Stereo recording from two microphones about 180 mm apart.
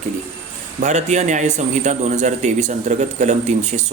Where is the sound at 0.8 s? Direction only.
40° right (ahead or behind).